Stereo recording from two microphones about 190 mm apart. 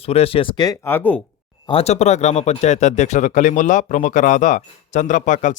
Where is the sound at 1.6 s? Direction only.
30° left (ahead or behind).